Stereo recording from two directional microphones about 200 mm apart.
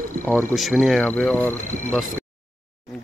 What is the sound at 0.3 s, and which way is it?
Speech, 5° left (ahead or behind).